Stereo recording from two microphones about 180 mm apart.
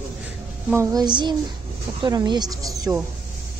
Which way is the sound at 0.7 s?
20° right (ahead or behind).